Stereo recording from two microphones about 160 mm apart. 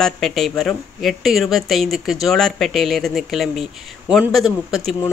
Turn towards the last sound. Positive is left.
turn(degrees=0)  # may be behind; listen again after turning